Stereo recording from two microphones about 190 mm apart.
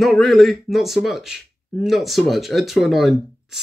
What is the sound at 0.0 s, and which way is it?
Speech, centre (ahead or behind).